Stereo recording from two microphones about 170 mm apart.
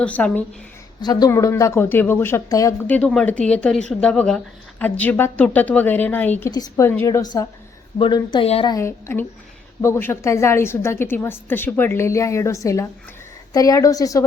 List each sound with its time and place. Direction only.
0.0 s a woman's voice: 10° left (ahead or behind)
1.0 s a woman's voice: 20° left (ahead or behind)
7.9 s speech: 30° left (ahead or behind)
8.7 s a woman's voice: 15° left (ahead or behind)